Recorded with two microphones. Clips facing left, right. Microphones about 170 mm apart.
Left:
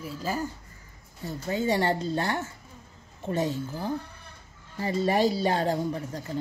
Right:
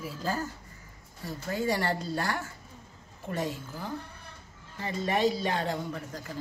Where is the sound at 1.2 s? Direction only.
25° left (ahead or behind).